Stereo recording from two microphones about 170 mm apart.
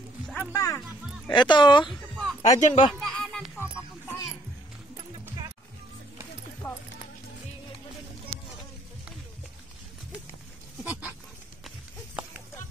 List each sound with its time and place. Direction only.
0.5 s speech: 20° left (ahead or behind)
1.9 s a sound: centre (ahead or behind)
2.5 s speech: 45° left (ahead or behind)
2.9 s a sound: centre (ahead or behind)
3.5 s music: 15° left (ahead or behind)
5.2 s music: 20° right (ahead or behind)
6.6 s clip-clop: 20° left (ahead or behind)